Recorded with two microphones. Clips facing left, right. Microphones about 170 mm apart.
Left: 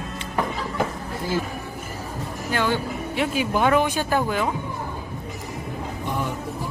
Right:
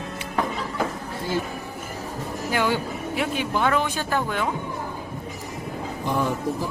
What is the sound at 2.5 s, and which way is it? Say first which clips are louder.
Speech: even; 10° right (ahead or behind).